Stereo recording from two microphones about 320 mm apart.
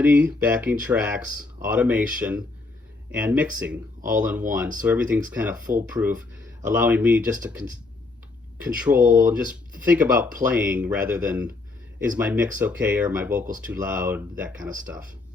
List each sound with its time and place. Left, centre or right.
0.0 s speech: centre
9.0 s speech: right
9.2 s speech: centre